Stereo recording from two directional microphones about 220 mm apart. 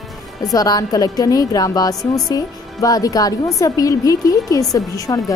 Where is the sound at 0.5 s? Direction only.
15° left (ahead or behind).